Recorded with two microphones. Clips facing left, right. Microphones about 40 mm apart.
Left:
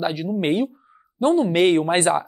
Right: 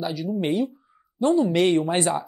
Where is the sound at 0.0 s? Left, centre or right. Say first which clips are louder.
Left 3 dB; left.